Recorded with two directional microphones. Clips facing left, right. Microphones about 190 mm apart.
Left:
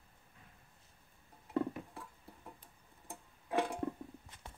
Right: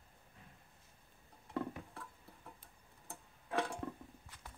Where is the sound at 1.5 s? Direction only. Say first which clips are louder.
Left 5 dB; 10° left (ahead or behind).